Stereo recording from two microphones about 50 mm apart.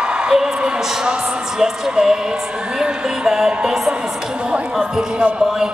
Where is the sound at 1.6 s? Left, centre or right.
Centre.